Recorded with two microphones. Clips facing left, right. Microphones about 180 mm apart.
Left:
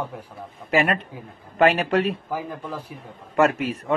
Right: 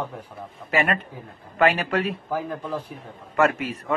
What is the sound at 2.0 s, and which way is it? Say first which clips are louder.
A man's voice: left 2 dB; 5° left (ahead or behind).